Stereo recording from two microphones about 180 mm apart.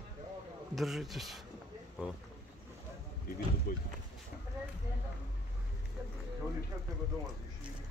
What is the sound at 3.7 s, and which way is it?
Speech, 55° left (ahead or behind).